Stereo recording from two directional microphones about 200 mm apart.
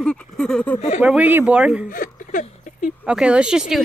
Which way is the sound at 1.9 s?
45° left (ahead or behind).